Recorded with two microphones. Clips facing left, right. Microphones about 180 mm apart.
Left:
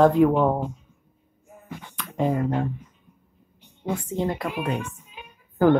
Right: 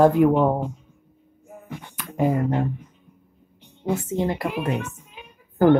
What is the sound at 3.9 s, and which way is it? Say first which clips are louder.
Speech: right 1 dB; 5° right (ahead or behind).